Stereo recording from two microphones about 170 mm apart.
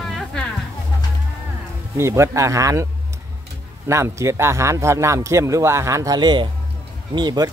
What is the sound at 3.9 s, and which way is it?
Speech, 15° right (ahead or behind).